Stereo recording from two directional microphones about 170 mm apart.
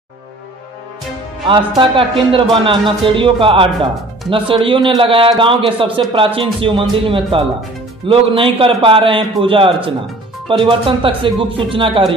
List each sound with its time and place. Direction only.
1.8 s speech: 30° right (ahead or behind)